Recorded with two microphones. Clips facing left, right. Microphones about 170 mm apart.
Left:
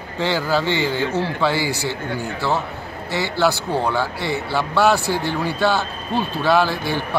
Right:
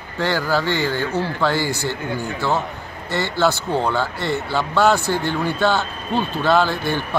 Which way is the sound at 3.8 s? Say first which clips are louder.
Even; 5° left (ahead or behind).